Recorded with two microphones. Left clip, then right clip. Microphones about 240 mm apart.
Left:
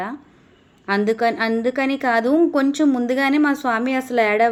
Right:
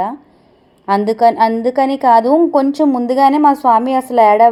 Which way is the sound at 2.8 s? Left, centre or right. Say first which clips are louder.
Right 5 dB; right.